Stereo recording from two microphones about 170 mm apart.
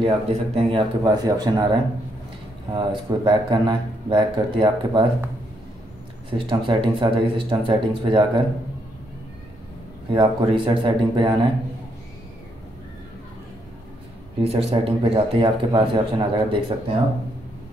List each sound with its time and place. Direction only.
0.0 s speech: 35° right (ahead or behind)
2.7 s speech: 25° right (ahead or behind)
6.3 s speech: 30° right (ahead or behind)
10.1 s speech: 30° right (ahead or behind)
14.4 s a man's voice: 35° right (ahead or behind)